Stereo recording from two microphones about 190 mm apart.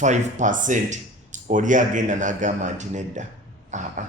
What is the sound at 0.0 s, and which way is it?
Speech, 40° right (ahead or behind).